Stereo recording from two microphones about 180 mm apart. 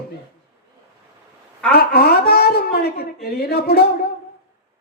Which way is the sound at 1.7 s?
60° left (ahead or behind).